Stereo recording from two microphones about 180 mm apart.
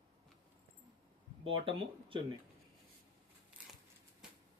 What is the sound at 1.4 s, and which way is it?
Speech, 30° right (ahead or behind).